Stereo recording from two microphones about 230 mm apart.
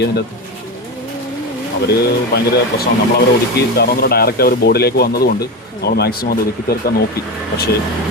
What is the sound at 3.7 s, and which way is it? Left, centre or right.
Speech, left.